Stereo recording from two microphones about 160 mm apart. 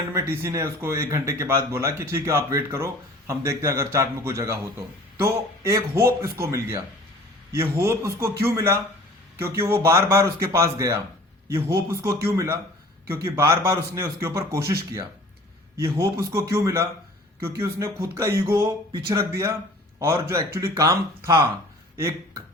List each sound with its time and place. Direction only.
0.1 s speech: 15° right (ahead or behind)
12.0 s speech: 20° right (ahead or behind)